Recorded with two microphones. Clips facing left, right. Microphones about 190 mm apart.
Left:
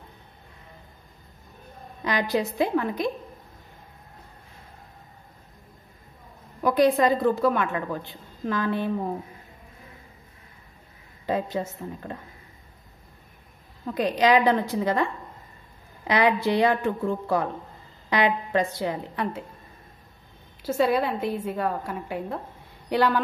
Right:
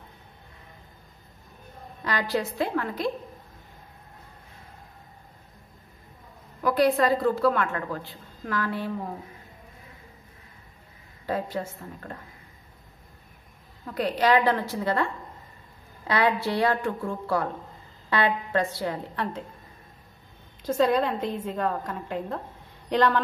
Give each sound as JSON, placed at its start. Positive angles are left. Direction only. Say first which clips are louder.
{"t": 2.0, "sound": "a woman's voice", "louder": "left 2 dB", "side_deg": 15}
{"t": 6.6, "sound": "a woman's voice", "louder": "left 2 dB", "side_deg": 20}
{"t": 11.2, "sound": "speech", "louder": "left 2 dB", "side_deg": 20}
{"t": 13.8, "sound": "a woman's voice", "louder": "left 2 dB", "side_deg": 20}
{"t": 20.6, "sound": "a woman's voice", "louder": "even", "side_deg": 5}